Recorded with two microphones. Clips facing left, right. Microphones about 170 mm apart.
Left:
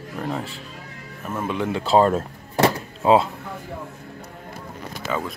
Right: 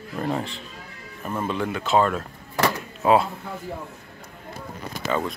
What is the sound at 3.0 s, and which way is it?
Speech, 25° left (ahead or behind).